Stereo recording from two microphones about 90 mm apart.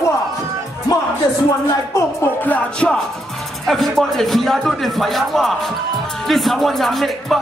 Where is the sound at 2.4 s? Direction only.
15° left (ahead or behind).